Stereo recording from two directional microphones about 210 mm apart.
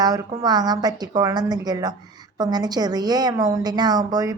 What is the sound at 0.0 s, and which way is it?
A woman's voice, 20° right (ahead or behind).